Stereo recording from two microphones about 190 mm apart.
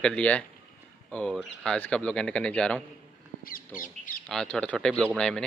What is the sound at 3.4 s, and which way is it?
Speech, 45° left (ahead or behind).